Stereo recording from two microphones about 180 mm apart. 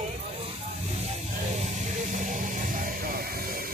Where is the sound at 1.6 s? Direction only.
40° right (ahead or behind).